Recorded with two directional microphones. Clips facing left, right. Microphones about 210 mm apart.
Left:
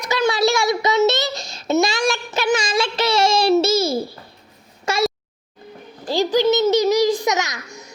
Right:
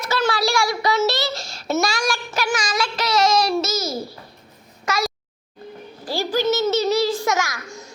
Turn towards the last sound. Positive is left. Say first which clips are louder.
# even
turn(degrees=20)  # may be behind; listen again after turning